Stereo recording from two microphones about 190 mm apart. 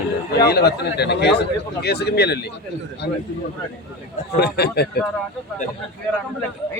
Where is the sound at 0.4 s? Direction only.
55° left (ahead or behind).